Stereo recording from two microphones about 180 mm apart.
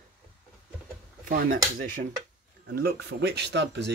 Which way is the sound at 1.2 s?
50° right (ahead or behind).